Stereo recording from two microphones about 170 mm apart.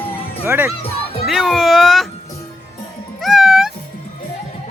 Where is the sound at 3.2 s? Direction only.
Centre (ahead or behind).